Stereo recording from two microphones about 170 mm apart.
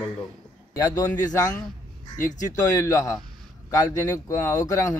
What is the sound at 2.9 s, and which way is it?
Speech, 20° left (ahead or behind).